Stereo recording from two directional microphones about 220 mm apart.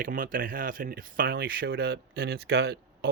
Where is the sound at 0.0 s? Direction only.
40° right (ahead or behind).